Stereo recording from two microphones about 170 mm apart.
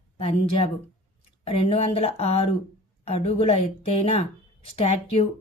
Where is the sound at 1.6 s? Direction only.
35° left (ahead or behind).